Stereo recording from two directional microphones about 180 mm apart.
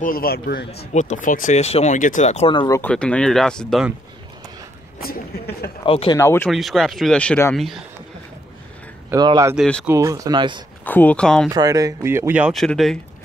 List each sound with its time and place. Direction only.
0.0 s a man's voice: 55° left (ahead or behind)
0.9 s speech: 45° left (ahead or behind)
2.5 s speech: 25° left (ahead or behind)
2.8 s speech: 5° left (ahead or behind)
5.0 s speech: 60° left (ahead or behind)
5.9 s speech: 30° left (ahead or behind)
6.1 s speech: 15° left (ahead or behind)
6.5 s speech: centre (ahead or behind)
7.5 s speech: centre (ahead or behind)
9.1 s speech: 20° right (ahead or behind)
9.6 s speech: 5° left (ahead or behind)
9.8 s speech: 15° right (ahead or behind)
10.9 s speech: 10° left (ahead or behind)
11.5 s speech: 20° right (ahead or behind); by 13.0 s centre (ahead or behind)